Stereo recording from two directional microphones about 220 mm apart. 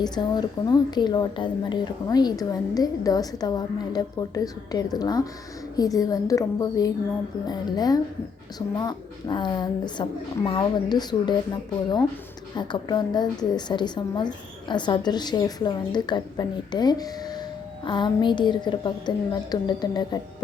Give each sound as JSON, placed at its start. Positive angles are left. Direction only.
{"t": 0.0, "sound": "a woman's voice", "side_deg": 20}
{"t": 12.5, "sound": "a woman's voice", "side_deg": 20}